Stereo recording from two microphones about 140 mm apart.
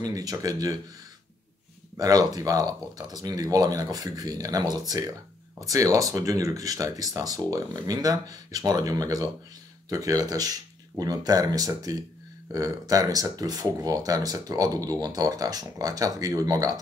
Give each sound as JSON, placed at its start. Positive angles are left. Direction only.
{"t": 0.0, "sound": "speech", "side_deg": -25}
{"t": 2.0, "sound": "speech", "side_deg": -25}